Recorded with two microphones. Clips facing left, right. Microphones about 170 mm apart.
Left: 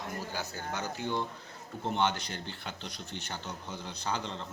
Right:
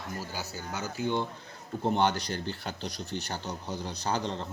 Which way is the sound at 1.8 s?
40° right (ahead or behind).